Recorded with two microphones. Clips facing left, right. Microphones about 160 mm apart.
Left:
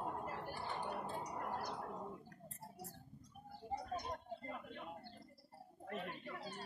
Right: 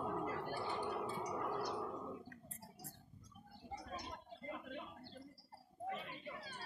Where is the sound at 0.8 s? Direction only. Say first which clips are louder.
Right 2 dB; 50° left (ahead or behind).